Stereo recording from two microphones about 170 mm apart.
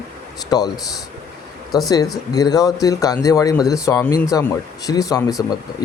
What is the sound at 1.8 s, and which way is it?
Speech, 20° left (ahead or behind).